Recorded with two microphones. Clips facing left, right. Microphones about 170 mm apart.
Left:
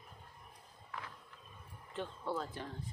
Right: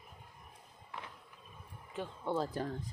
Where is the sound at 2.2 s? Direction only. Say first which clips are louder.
Right 7 dB; 30° right (ahead or behind).